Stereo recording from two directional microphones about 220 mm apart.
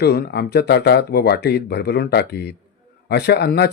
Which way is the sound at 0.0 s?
45° left (ahead or behind).